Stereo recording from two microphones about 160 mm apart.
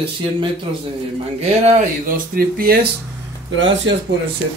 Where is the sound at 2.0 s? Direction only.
65° right (ahead or behind).